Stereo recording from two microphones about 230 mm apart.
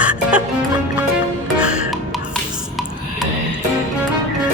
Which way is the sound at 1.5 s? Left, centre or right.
Centre.